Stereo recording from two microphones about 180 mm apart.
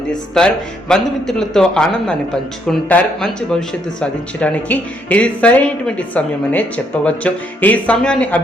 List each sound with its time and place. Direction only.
0.3 s a man's voice: 5° left (ahead or behind)